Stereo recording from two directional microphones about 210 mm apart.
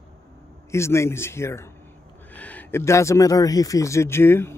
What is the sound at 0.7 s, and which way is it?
Speech, 15° left (ahead or behind).